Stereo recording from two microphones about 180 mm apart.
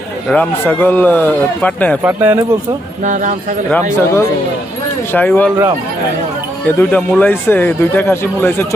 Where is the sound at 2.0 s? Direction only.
15° right (ahead or behind).